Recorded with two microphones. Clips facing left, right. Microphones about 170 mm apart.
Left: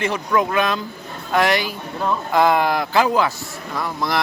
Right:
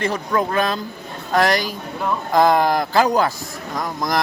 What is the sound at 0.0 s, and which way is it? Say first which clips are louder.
A man's voice: left 1 dB; 35° right (ahead or behind).